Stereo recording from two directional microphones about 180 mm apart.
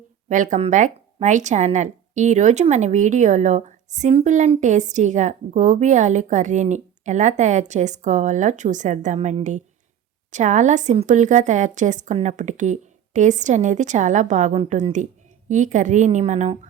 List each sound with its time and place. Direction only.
0.3 s a woman's voice: 45° right (ahead or behind)